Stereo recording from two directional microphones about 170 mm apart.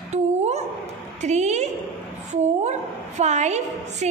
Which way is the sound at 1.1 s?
40° right (ahead or behind).